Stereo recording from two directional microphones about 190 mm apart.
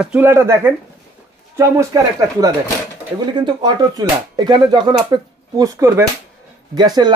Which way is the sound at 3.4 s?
20° right (ahead or behind).